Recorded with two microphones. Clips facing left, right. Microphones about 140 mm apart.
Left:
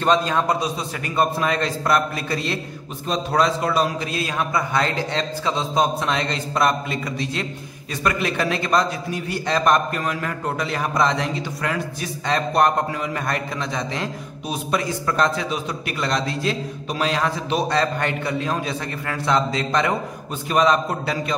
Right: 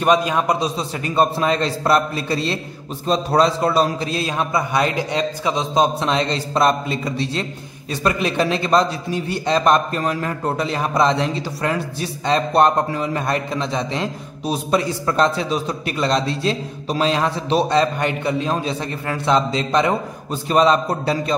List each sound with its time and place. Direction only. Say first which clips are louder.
0.0 s a man's voice: right 2 dB; 15° right (ahead or behind)
0.6 s a man's voice: right 3 dB; 25° right (ahead or behind)
17.6 s a man's voice: right 3 dB; 20° right (ahead or behind)